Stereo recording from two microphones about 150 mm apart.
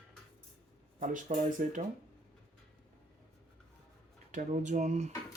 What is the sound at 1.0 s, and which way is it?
Speech, 60° right (ahead or behind).